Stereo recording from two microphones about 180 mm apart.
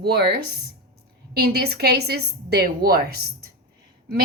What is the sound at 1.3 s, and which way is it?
A woman's voice, 65° right (ahead or behind).